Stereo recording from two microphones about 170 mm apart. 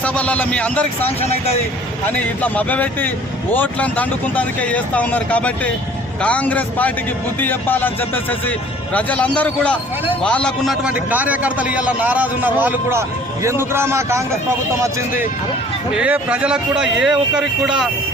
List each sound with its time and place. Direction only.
0.0 s a man's voice: 10° left (ahead or behind)
1.2 s a man's voice: 40° left (ahead or behind)
2.0 s a man's voice: 10° left (ahead or behind)
10.8 s a man's voice: 10° right (ahead or behind)
16.0 s speech: 10° right (ahead or behind)